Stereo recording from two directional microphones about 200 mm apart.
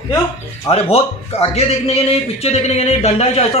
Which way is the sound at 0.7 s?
30° left (ahead or behind).